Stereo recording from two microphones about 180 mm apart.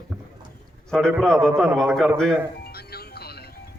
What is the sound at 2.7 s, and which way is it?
Music, 60° left (ahead or behind).